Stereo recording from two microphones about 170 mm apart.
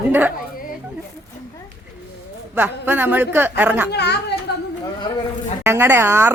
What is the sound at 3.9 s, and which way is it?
Speech, 80° left.